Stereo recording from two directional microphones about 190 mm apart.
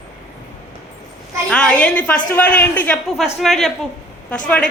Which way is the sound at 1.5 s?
5° left (ahead or behind).